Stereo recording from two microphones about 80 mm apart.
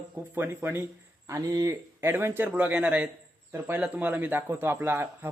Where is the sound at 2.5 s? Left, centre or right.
Centre.